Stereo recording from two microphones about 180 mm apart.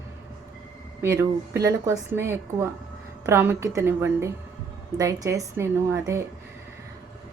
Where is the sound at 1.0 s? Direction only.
15° right (ahead or behind).